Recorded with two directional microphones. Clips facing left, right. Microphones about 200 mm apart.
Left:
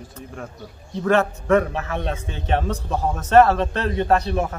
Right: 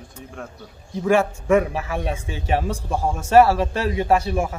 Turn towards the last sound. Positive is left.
turn(degrees=-10)  # may be behind; listen again after turning